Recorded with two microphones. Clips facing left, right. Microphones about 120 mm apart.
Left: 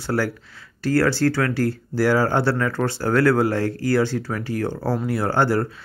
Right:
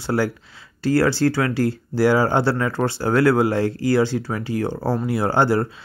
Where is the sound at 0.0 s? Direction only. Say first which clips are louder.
Right 2 dB; 15° right (ahead or behind).